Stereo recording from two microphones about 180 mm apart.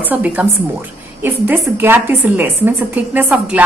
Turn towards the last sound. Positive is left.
turn(degrees=-5)  # may be behind; listen again after turning